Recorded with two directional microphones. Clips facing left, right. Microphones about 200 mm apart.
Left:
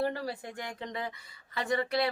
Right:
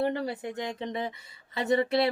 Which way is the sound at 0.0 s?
20° right (ahead or behind).